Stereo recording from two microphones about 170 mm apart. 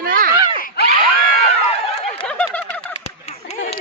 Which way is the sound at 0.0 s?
55° right (ahead or behind).